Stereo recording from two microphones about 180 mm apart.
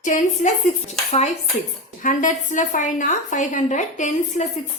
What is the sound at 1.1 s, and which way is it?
Dishes, 40° left (ahead or behind).